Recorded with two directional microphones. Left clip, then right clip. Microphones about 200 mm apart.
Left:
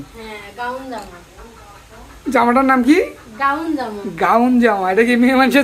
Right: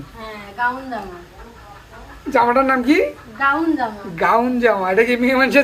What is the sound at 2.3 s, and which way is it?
Speech, 25° left (ahead or behind).